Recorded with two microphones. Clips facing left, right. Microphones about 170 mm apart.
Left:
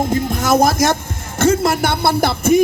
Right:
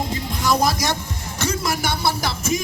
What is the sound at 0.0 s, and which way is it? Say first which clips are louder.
Music: left 7 dB; 50° left (ahead or behind).